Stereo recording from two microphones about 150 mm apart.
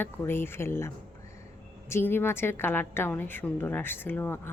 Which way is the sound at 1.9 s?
15° left (ahead or behind).